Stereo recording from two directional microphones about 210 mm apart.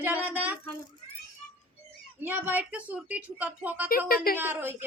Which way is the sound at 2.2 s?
10° right (ahead or behind).